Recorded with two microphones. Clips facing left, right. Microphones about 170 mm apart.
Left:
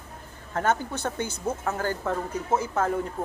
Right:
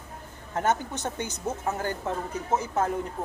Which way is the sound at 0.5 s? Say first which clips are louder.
Left 1 dB; 20° right (ahead or behind).